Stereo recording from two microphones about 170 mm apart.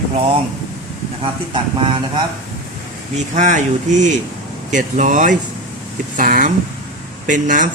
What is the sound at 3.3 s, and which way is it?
Speech, 45° right (ahead or behind).